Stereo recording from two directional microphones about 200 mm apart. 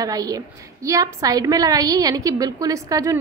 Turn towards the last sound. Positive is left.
turn(degrees=-15)  # may be behind; listen again after turning